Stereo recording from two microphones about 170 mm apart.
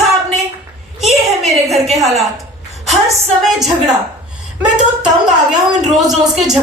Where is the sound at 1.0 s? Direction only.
40° right (ahead or behind).